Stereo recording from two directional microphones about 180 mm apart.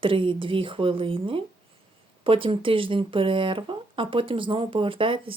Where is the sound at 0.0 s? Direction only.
30° right (ahead or behind).